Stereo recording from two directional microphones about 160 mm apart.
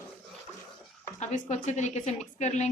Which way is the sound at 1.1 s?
45° left (ahead or behind).